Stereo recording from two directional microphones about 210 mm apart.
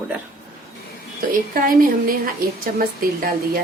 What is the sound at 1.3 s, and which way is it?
A woman's voice, 40° right (ahead or behind).